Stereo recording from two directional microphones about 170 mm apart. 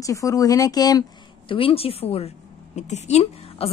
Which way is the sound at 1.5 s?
35° left (ahead or behind).